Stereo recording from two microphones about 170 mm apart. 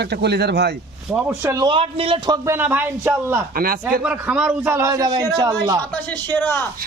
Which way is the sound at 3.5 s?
60° right (ahead or behind).